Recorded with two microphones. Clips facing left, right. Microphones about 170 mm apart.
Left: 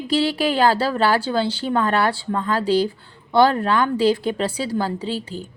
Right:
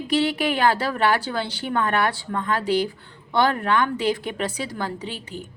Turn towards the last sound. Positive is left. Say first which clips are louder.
# left 6 dB
turn(degrees=30)  # may be behind; listen again after turning